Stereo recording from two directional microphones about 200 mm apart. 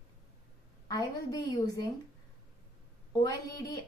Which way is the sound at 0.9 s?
20° left (ahead or behind).